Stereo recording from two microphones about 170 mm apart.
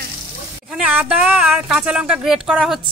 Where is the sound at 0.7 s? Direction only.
5° right (ahead or behind).